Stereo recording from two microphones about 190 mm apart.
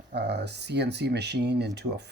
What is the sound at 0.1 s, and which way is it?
Speech, 65° right (ahead or behind).